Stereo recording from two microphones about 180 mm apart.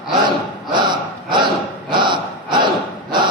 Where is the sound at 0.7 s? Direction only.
25° right (ahead or behind).